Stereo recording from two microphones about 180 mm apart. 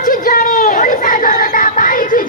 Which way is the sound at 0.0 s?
50° left (ahead or behind).